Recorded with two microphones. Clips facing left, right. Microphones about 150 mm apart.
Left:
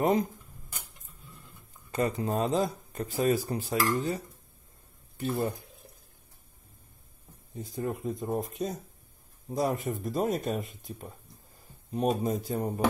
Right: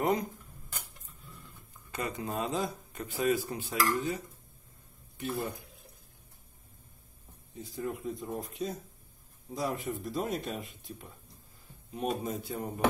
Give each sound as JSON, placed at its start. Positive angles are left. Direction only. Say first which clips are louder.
{"t": 0.0, "sound": "speech", "louder": "left 4 dB", "side_deg": 25}
{"t": 1.9, "sound": "a man's voice", "louder": "left 7 dB", "side_deg": 35}
{"t": 7.5, "sound": "a man's voice", "louder": "left 3 dB", "side_deg": 40}